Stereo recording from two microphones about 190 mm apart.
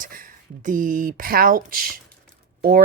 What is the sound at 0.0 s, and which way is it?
A woman's voice, 45° right (ahead or behind).